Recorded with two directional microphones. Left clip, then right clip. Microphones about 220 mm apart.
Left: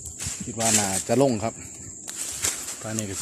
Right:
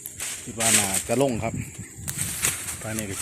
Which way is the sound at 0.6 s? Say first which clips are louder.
Right 1 dB; 20° left (ahead or behind).